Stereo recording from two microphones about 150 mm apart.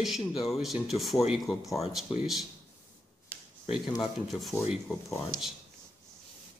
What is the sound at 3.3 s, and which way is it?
Finger snapping, 10° left (ahead or behind).